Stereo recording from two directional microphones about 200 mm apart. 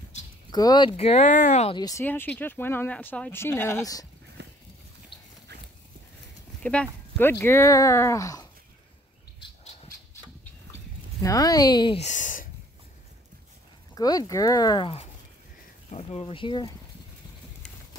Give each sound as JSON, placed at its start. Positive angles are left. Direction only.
{"t": 0.5, "sound": "speech", "side_deg": 20}
{"t": 1.8, "sound": "speech", "side_deg": 15}
{"t": 4.4, "sound": "a sound", "side_deg": -60}
{"t": 5.5, "sound": "horse", "side_deg": -55}
{"t": 6.6, "sound": "speech", "side_deg": 5}
{"t": 11.2, "sound": "speech", "side_deg": 20}
{"t": 13.9, "sound": "speech", "side_deg": 20}